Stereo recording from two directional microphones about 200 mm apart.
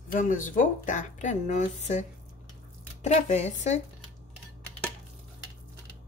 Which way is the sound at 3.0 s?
35° left (ahead or behind).